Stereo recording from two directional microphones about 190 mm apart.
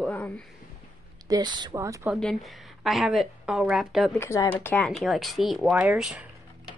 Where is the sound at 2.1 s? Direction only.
Centre (ahead or behind).